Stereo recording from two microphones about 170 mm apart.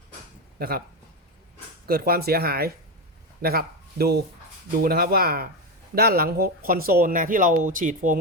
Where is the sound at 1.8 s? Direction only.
60° right (ahead or behind).